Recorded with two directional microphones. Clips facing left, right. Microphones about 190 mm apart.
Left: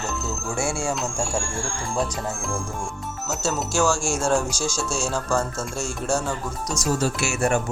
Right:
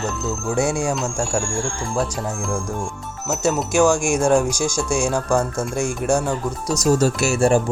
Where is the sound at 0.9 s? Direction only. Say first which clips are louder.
Right 4 dB; centre (ahead or behind); by 6.4 s 15° right (ahead or behind).